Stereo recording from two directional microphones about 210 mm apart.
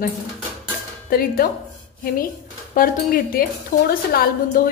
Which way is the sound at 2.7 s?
45° left (ahead or behind).